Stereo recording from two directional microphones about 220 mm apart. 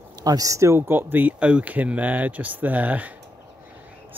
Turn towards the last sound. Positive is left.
turn(degrees=-5)  # may be behind; listen again after turning